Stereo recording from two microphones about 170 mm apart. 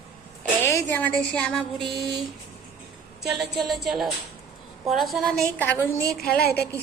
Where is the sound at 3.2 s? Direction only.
Centre (ahead or behind).